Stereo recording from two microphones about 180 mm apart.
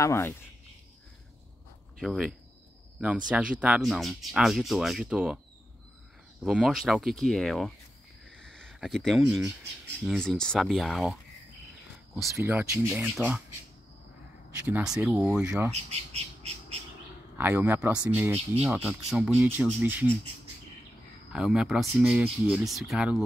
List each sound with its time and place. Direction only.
0.0 s speech: 15° left (ahead or behind)
2.0 s speech: centre (ahead or behind)
6.4 s speech: 5° right (ahead or behind)
12.3 s speech: 15° right (ahead or behind)
14.7 s speech: 5° right (ahead or behind)
15.7 s bird: 35° right (ahead or behind)
17.4 s speech: 10° right (ahead or behind)
21.3 s speech: 5° right (ahead or behind)